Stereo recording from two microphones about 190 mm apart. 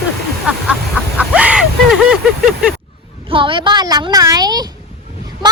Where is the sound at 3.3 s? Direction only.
25° right (ahead or behind).